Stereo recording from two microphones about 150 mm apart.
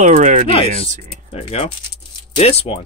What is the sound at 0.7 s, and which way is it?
Speech, 55° right (ahead or behind).